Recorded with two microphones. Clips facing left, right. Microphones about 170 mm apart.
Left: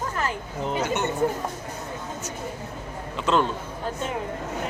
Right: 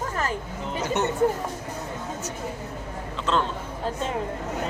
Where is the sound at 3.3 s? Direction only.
10° left (ahead or behind).